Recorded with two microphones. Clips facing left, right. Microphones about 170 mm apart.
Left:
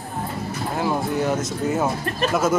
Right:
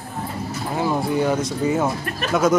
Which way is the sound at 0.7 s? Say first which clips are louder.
Right 2 dB; centre (ahead or behind).